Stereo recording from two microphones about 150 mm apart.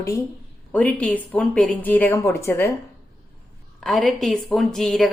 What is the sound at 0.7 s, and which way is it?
A woman's voice, 10° left (ahead or behind).